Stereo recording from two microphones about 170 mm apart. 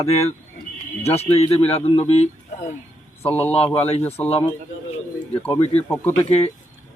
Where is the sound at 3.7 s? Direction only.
35° left (ahead or behind).